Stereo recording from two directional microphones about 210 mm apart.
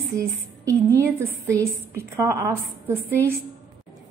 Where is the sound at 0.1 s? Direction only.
15° right (ahead or behind).